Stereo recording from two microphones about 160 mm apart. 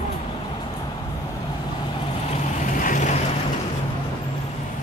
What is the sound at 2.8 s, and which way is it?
Boat, 55° left (ahead or behind).